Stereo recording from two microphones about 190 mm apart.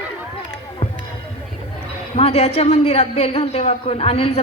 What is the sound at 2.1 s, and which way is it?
A man's voice, 30° left (ahead or behind).